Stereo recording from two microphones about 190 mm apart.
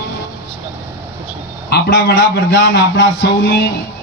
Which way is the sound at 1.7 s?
60° left (ahead or behind).